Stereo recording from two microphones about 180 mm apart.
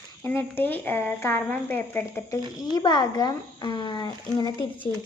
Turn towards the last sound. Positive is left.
turn(degrees=20)  # may be behind; listen again after turning